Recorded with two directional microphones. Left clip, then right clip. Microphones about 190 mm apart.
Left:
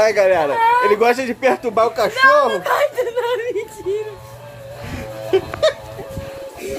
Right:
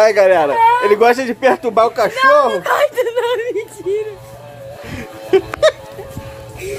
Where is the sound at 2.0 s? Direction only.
10° right (ahead or behind).